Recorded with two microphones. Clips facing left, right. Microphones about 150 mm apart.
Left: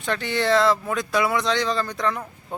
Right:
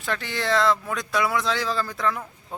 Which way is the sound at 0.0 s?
Centre (ahead or behind).